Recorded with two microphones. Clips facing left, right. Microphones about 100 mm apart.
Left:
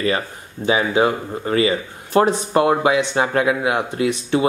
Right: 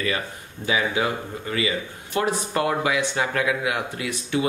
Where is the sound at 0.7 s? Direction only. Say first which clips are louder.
Left 6 dB; 30° left (ahead or behind).